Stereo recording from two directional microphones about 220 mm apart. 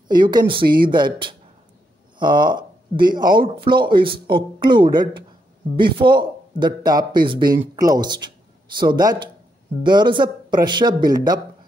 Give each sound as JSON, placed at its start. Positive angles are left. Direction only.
{"t": 0.1, "sound": "speech", "side_deg": -20}